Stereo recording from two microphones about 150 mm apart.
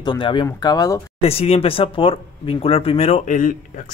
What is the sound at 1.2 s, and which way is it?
Speech, 40° left (ahead or behind).